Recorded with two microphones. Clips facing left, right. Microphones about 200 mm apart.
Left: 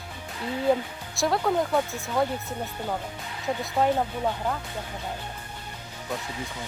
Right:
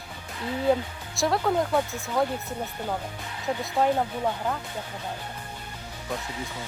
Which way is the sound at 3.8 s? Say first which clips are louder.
Even; centre (ahead or behind).